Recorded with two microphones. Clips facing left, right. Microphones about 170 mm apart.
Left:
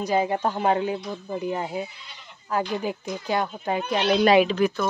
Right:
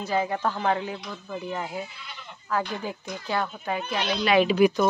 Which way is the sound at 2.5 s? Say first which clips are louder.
Left 3 dB; 15° left (ahead or behind).